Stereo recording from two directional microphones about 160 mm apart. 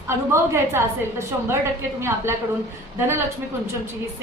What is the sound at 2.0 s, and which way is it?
Speech, 15° right (ahead or behind).